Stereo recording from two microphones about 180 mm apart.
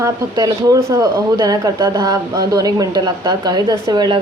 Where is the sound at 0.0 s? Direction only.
20° right (ahead or behind).